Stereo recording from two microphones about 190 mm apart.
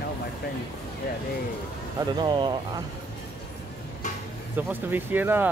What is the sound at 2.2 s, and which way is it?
Speech, 25° right (ahead or behind).